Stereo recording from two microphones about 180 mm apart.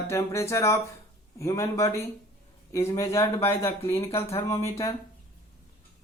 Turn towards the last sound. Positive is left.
turn(degrees=15)  # may be behind; listen again after turning